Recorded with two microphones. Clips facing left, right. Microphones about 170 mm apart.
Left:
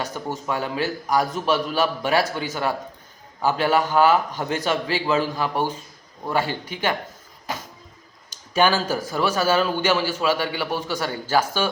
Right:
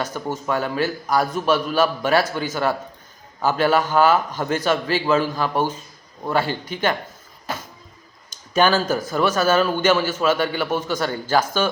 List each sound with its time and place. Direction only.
0.4 s a man's voice: 15° left (ahead or behind)